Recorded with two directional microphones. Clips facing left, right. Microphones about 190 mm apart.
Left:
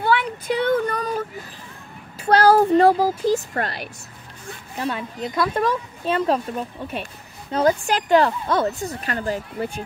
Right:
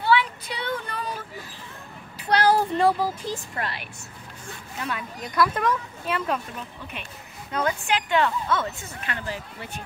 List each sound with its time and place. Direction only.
0.0 s child singing: 50° left (ahead or behind)
2.2 s speech: 40° left (ahead or behind)
4.7 s speech: 30° left (ahead or behind)
7.5 s a woman's voice: 35° left (ahead or behind)